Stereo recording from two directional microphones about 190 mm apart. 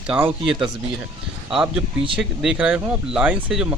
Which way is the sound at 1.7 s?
5° right (ahead or behind).